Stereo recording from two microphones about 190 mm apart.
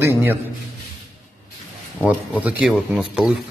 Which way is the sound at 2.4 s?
5° right (ahead or behind).